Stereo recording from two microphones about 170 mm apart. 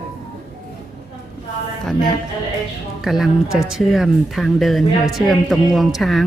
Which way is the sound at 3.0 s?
Centre (ahead or behind).